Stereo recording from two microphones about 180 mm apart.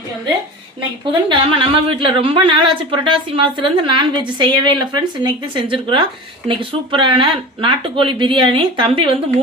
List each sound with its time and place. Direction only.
1.3 s a woman's voice: 30° right (ahead or behind)